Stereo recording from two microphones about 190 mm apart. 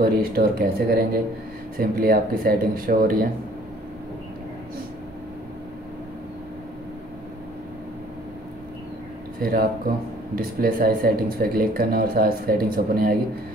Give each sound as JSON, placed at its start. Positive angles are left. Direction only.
{"t": 0.0, "sound": "speech", "side_deg": -50}
{"t": 9.4, "sound": "speech", "side_deg": -50}